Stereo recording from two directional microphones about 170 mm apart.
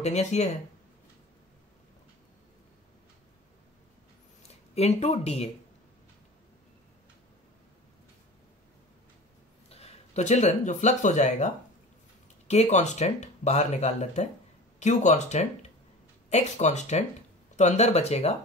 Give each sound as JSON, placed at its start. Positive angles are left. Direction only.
{"t": 0.0, "sound": "speech", "side_deg": 40}
{"t": 4.4, "sound": "speech", "side_deg": 40}
{"t": 9.7, "sound": "speech", "side_deg": 35}